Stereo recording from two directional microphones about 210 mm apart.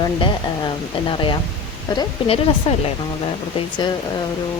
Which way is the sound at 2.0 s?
25° left (ahead or behind).